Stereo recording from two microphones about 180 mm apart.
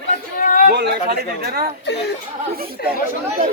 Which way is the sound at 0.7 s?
70° right (ahead or behind).